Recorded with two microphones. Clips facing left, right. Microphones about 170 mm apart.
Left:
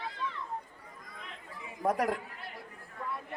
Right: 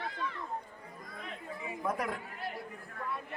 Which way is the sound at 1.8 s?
40° left (ahead or behind).